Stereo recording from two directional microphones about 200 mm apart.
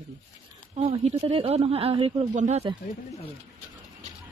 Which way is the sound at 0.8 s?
30° right (ahead or behind).